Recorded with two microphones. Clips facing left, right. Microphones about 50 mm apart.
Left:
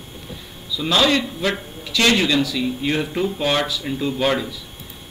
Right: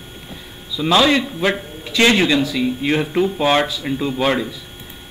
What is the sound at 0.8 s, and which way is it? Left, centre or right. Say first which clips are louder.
A man's voice: right 3 dB; centre.